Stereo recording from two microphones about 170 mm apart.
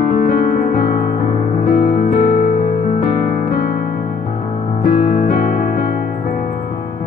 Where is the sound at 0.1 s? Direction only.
55° left (ahead or behind).